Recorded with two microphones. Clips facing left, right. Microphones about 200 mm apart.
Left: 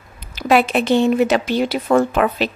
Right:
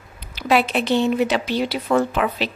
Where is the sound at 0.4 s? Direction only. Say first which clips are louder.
Left 3 dB; 50° left (ahead or behind).